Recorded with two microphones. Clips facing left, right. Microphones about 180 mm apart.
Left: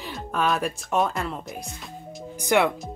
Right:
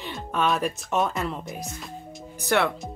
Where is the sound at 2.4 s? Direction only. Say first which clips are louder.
Left 2 dB; 15° left (ahead or behind).